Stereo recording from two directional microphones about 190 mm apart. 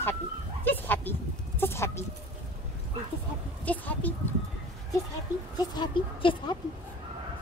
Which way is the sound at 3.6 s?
10° left (ahead or behind).